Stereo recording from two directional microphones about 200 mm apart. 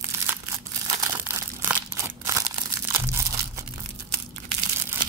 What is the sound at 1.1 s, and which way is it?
Tearing, 10° right (ahead or behind).